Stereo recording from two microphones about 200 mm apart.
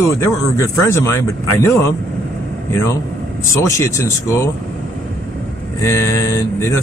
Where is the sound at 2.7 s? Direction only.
10° left (ahead or behind).